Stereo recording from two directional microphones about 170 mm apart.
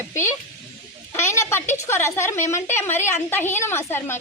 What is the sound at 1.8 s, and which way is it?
A woman's voice, 15° left (ahead or behind).